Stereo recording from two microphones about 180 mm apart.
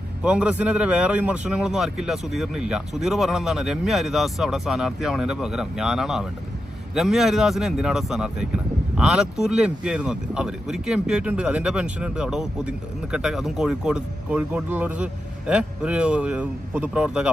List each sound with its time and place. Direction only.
0.2 s speech: 5° right (ahead or behind)